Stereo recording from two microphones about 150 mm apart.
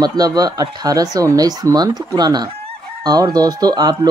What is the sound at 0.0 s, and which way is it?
Speech, 25° right (ahead or behind).